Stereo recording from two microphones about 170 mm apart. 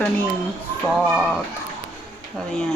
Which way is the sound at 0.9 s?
Centre (ahead or behind).